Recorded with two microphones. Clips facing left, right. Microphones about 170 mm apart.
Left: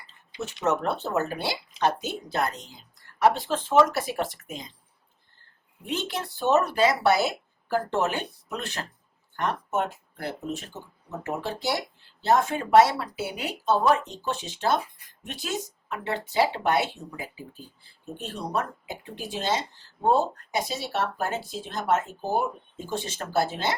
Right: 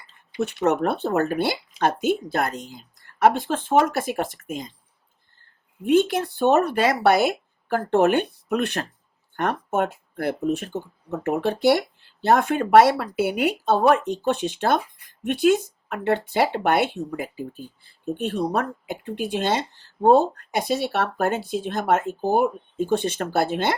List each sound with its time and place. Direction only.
0.4 s speech: 55° right (ahead or behind)
5.8 s speech: 50° right (ahead or behind)